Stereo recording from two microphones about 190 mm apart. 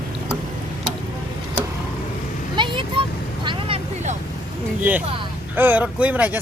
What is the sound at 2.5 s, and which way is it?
Vehicle, 25° right (ahead or behind).